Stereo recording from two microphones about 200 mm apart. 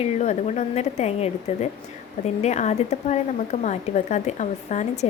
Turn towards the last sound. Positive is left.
turn(degrees=35)  # may be behind; listen again after turning